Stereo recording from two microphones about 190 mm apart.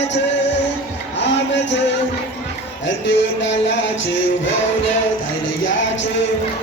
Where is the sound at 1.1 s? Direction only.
70° left (ahead or behind).